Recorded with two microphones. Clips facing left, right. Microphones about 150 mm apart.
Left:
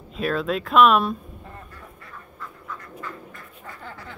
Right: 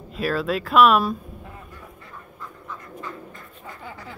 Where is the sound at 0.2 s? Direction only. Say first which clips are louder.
Even; 5° right (ahead or behind).